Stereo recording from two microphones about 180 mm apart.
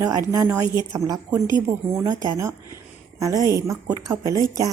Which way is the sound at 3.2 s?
20° right (ahead or behind).